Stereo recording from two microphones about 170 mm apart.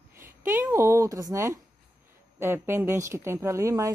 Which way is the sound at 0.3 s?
10° right (ahead or behind).